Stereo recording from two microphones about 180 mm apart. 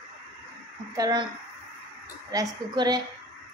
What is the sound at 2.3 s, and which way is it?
Speech, 20° right (ahead or behind).